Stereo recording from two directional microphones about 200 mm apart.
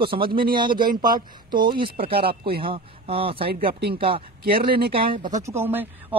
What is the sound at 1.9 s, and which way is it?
Speech, 50° right (ahead or behind).